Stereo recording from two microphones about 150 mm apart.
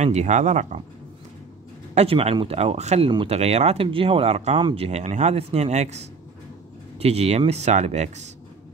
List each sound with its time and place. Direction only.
0.0 s speech: 50° right (ahead or behind)
2.0 s speech: 40° right (ahead or behind)
4.6 s speech: 35° right (ahead or behind)